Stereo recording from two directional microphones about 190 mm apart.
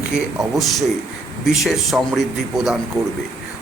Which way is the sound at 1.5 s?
Centre (ahead or behind).